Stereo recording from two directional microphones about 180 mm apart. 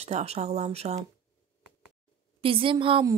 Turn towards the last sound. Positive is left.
turn(degrees=-30)  # may be behind; listen again after turning